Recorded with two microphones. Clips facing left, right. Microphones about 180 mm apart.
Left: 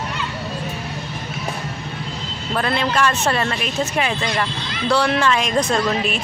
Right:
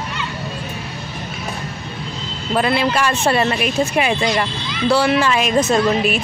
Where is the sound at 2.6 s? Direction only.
10° right (ahead or behind).